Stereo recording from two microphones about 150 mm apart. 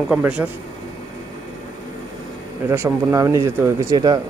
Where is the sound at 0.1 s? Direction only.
10° right (ahead or behind).